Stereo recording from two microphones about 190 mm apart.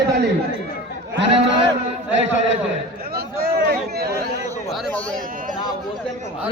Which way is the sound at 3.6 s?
55° right (ahead or behind).